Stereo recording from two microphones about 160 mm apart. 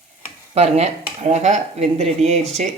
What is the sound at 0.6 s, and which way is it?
Speech, 40° right (ahead or behind).